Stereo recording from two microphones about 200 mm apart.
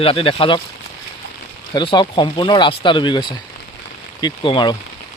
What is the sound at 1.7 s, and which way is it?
Speech, 25° left (ahead or behind).